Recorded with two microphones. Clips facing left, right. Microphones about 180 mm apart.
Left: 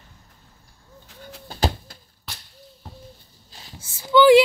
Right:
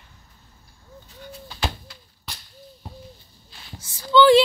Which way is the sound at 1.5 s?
45° left (ahead or behind).